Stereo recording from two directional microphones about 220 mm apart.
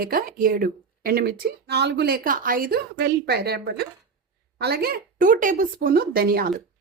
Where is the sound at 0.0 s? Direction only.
40° right (ahead or behind).